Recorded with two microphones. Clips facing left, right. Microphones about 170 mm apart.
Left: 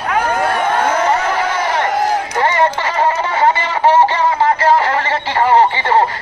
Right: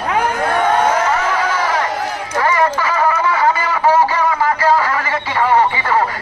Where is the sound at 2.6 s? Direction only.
25° left (ahead or behind).